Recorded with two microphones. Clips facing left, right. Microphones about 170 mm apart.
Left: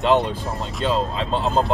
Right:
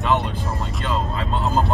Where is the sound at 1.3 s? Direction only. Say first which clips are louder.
Left 1 dB; 20° left (ahead or behind).